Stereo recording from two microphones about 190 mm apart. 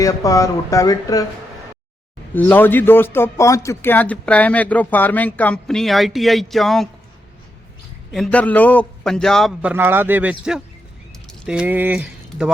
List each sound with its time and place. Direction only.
0.0 s speech: 20° left (ahead or behind)
2.3 s speech: 10° left (ahead or behind)
8.1 s a man's voice: 5° left (ahead or behind)